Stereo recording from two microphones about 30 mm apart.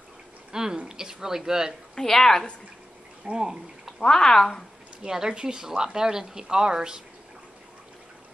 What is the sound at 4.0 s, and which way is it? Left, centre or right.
Speech, left.